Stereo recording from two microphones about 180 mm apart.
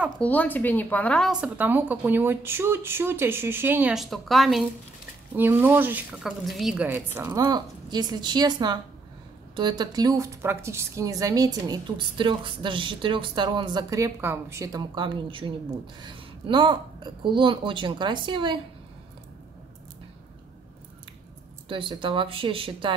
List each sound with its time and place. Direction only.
0.2 s a woman's voice: 10° left (ahead or behind)
1.4 s a woman's voice: 10° right (ahead or behind)
5.3 s a woman's voice: 10° right (ahead or behind); by 18.6 s 25° right (ahead or behind)
21.6 s a woman's voice: 30° right (ahead or behind)